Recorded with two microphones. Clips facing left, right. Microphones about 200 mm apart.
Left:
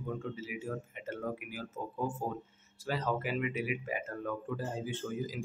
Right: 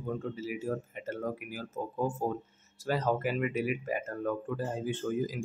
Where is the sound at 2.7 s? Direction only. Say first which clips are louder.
Right 4 dB; 45° right (ahead or behind).